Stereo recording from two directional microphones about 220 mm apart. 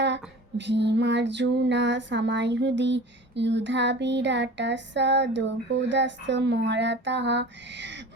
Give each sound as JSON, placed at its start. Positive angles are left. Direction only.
{"t": 0.0, "sound": "female singing", "side_deg": -55}